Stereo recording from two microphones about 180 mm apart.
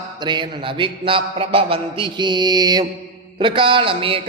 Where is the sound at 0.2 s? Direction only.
25° right (ahead or behind).